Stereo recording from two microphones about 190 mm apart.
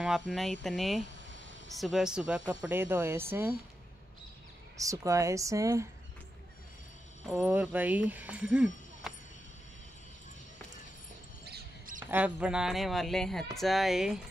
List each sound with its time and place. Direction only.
0.0 s speech: centre (ahead or behind)
4.7 s speech: 15° right (ahead or behind)
7.2 s speech: 5° right (ahead or behind)
11.4 s basketball bounce: 50° right (ahead or behind)
12.1 s speech: 5° right (ahead or behind)